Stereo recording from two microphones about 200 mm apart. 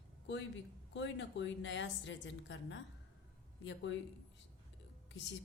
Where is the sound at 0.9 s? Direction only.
65° left (ahead or behind).